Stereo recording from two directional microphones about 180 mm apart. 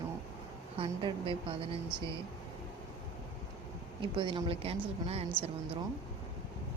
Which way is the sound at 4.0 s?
25° right (ahead or behind).